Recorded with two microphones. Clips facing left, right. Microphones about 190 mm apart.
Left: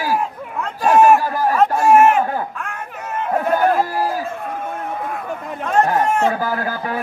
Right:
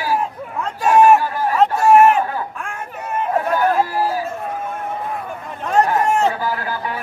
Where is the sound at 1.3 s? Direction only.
40° left (ahead or behind).